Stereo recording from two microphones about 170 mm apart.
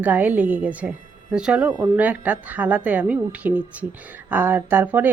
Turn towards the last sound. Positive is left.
turn(degrees=-10)  # may be behind; listen again after turning